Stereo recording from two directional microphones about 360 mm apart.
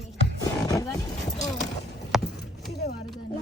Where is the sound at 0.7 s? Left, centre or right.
Centre.